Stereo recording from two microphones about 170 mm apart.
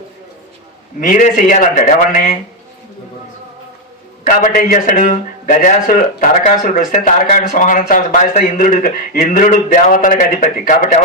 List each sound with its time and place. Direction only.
0.9 s a man's voice: 50° left (ahead or behind)
4.2 s a man's voice: 50° left (ahead or behind)